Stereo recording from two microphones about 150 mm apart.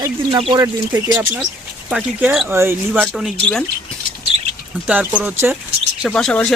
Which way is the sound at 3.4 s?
5° left (ahead or behind).